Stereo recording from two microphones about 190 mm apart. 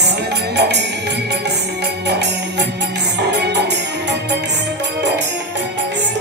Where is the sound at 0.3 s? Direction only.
60° right (ahead or behind).